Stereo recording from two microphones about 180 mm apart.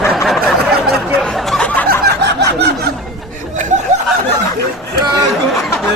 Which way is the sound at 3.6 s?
45° right (ahead or behind).